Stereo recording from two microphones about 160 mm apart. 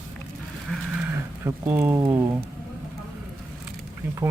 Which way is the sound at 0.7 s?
10° right (ahead or behind).